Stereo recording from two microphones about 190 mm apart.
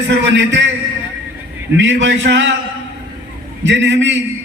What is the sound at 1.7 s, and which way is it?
Speech, 75° right (ahead or behind).